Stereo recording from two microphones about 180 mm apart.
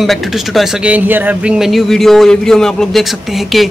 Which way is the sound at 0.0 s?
Centre (ahead or behind).